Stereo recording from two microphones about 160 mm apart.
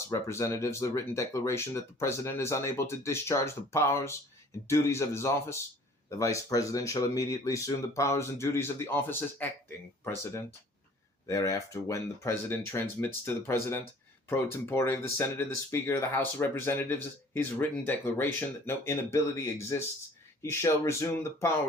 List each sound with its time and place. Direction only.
0.1 s speech: 20° left (ahead or behind)